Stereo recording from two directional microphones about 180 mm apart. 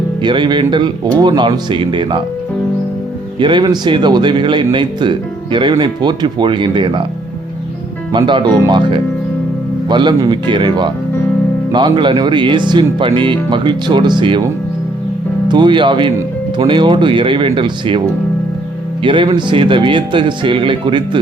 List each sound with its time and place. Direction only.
0.2 s speech: 25° right (ahead or behind)
3.3 s speech: 25° right (ahead or behind)
8.1 s speech: 25° right (ahead or behind)
15.4 s speech: 25° right (ahead or behind)
19.0 s speech: 25° right (ahead or behind)